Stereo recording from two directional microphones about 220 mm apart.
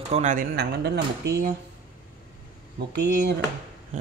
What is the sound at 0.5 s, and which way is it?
Speech, 50° right (ahead or behind).